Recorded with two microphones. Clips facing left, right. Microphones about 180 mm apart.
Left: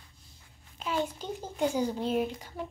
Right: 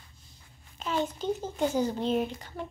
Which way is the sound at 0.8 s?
10° left (ahead or behind).